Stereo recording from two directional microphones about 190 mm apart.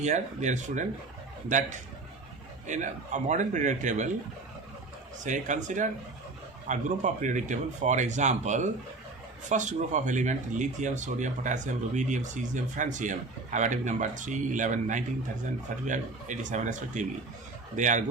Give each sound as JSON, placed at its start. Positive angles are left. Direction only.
{"t": 0.0, "sound": "speech", "side_deg": -40}
{"t": 2.6, "sound": "speech", "side_deg": -40}
{"t": 5.2, "sound": "speech", "side_deg": -40}